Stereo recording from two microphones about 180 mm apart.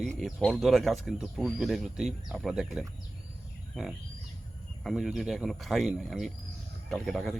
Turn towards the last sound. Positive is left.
turn(degrees=0)  # may be behind; listen again after turning